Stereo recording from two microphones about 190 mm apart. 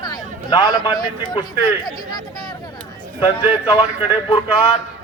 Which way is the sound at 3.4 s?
25° left (ahead or behind).